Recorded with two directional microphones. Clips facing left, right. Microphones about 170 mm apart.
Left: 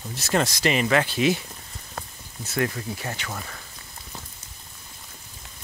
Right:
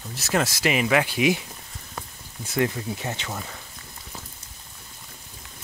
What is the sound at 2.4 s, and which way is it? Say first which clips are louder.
Speech: right 2 dB; 20° right (ahead or behind).